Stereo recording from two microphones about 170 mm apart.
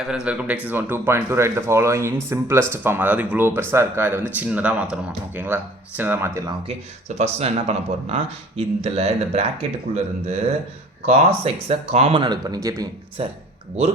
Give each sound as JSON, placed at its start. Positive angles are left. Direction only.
{"t": 0.3, "sound": "speech", "side_deg": -10}
{"t": 6.7, "sound": "speech", "side_deg": -40}
{"t": 11.4, "sound": "speech", "side_deg": -35}
{"t": 13.2, "sound": "speech", "side_deg": -35}